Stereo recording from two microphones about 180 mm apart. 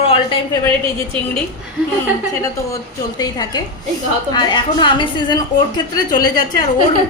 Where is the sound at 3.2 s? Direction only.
20° left (ahead or behind).